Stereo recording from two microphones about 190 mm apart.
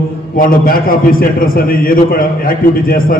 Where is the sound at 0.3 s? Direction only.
45° left (ahead or behind).